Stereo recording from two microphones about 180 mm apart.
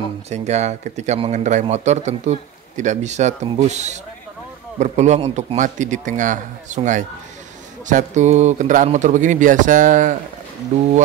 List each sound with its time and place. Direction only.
0.3 s a man's voice: 40° right (ahead or behind)